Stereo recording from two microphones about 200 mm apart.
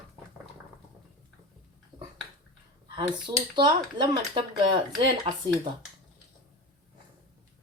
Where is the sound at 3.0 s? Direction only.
20° right (ahead or behind).